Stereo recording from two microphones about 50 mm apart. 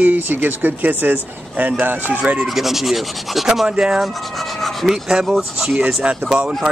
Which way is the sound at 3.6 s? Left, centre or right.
Centre.